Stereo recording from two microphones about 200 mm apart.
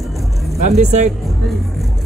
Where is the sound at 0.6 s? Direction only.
35° right (ahead or behind).